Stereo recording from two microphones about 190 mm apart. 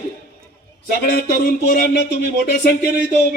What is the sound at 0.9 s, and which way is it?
A man's voice, 55° left (ahead or behind).